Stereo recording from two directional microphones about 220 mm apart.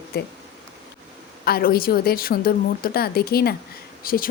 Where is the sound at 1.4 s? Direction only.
45° left (ahead or behind).